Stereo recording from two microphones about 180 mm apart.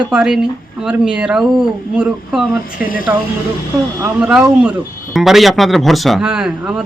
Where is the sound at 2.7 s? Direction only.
50° left (ahead or behind).